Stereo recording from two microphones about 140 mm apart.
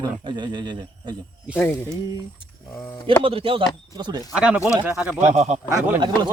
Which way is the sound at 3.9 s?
30° right (ahead or behind).